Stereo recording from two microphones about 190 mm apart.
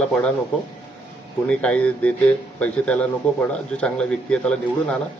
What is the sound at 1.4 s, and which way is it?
Speech, 5° left (ahead or behind).